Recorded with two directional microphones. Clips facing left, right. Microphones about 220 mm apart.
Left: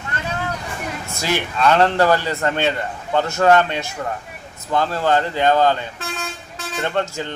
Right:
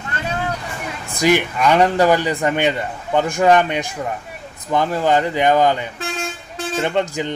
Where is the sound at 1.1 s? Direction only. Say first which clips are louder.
Right 8 dB; 15° right (ahead or behind).